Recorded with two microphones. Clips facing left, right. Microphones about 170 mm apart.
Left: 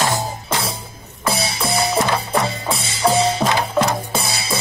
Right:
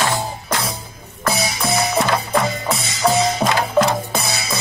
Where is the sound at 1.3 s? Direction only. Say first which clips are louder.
Right 1 dB; 30° left (ahead or behind).